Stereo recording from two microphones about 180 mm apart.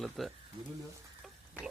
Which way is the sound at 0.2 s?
Centre (ahead or behind).